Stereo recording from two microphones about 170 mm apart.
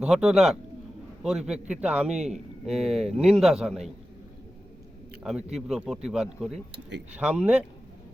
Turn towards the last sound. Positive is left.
turn(degrees=-5)  # may be behind; listen again after turning